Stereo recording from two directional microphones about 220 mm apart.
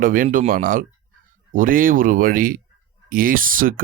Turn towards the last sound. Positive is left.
turn(degrees=-40)  # may be behind; listen again after turning